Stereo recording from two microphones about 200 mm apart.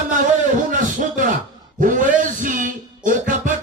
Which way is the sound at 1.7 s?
40° right (ahead or behind).